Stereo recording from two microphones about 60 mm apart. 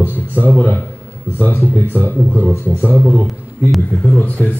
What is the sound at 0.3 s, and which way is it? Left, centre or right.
A man's voice, left.